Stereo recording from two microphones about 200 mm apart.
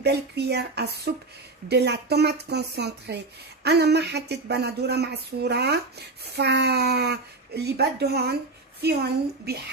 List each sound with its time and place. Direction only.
0.0 s a woman's voice: 55° right (ahead or behind)